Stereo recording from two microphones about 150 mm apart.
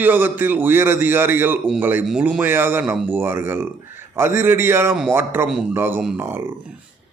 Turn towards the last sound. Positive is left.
turn(degrees=-15)  # may be behind; listen again after turning